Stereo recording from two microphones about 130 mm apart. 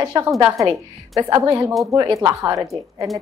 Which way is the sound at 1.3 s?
25° right (ahead or behind).